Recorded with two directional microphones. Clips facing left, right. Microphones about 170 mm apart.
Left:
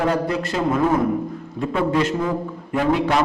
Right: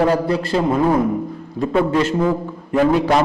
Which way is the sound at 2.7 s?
35° right (ahead or behind).